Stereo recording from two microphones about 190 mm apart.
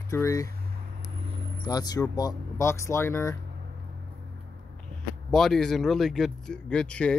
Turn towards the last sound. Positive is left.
turn(degrees=5)  # may be behind; listen again after turning